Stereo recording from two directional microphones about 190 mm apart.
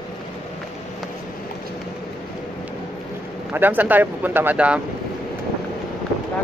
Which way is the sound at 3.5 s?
10° right (ahead or behind).